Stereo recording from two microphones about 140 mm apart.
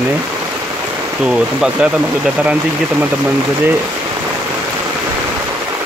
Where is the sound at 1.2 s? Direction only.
5° right (ahead or behind).